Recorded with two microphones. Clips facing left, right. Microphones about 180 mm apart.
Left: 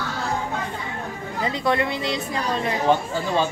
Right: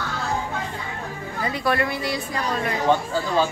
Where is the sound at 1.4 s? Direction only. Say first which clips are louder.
Left 1 dB; 20° left (ahead or behind).